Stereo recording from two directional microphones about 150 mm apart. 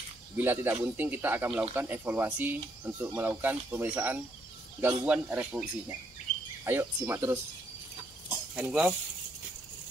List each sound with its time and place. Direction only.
0.4 s speech: 15° right (ahead or behind)
8.5 s speech: 10° right (ahead or behind)